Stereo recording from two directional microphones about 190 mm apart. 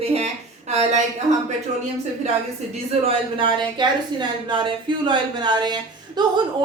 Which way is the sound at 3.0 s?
25° right (ahead or behind).